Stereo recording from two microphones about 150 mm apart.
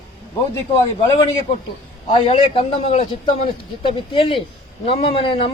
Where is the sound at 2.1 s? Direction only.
35° left (ahead or behind).